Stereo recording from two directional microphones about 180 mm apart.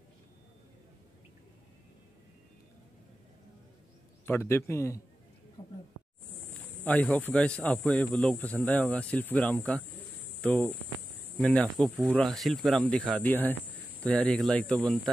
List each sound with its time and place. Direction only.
4.3 s speech: 15° left (ahead or behind)
5.6 s a sound: 30° left (ahead or behind)
6.6 s speech: 10° left (ahead or behind)